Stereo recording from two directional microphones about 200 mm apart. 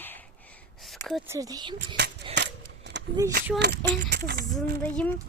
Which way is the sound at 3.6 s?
55° right (ahead or behind).